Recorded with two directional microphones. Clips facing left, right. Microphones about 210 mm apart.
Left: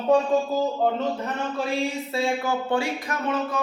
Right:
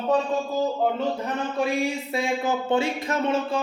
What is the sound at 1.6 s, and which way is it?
Speech, 15° right (ahead or behind).